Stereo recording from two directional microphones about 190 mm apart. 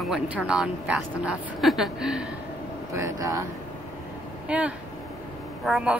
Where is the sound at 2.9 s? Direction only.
15° right (ahead or behind).